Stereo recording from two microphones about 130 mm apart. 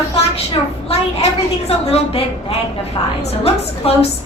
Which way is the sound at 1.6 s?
50° left (ahead or behind).